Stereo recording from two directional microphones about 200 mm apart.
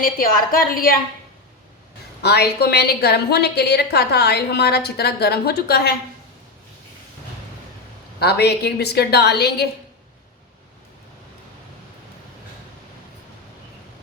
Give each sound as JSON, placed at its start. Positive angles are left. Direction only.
{"t": 0.0, "sound": "a woman's voice", "side_deg": 45}
{"t": 2.2, "sound": "a woman's voice", "side_deg": 55}
{"t": 8.2, "sound": "a woman's voice", "side_deg": 55}